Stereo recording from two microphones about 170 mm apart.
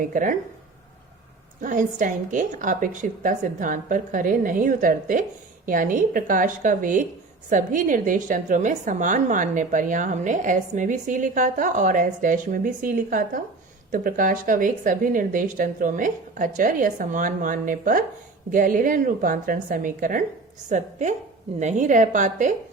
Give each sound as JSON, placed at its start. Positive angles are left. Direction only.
{"t": 0.0, "sound": "a woman's voice", "side_deg": -50}
{"t": 1.6, "sound": "a woman's voice", "side_deg": -50}